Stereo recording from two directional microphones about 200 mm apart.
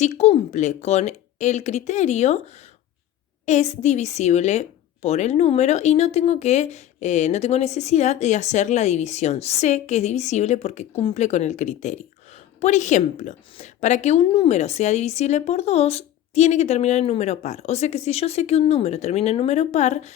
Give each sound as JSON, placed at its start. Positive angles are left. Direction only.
{"t": 0.0, "sound": "a woman's voice", "side_deg": 35}
{"t": 3.4, "sound": "a woman's voice", "side_deg": 35}